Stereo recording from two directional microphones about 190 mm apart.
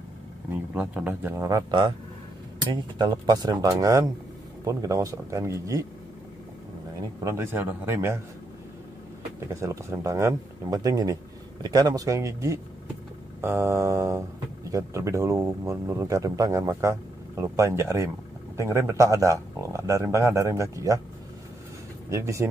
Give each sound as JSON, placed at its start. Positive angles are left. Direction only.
{"t": 0.7, "sound": "speech", "side_deg": -10}
{"t": 7.2, "sound": "speech", "side_deg": -10}
{"t": 9.5, "sound": "speech", "side_deg": -15}
{"t": 22.1, "sound": "speech", "side_deg": -15}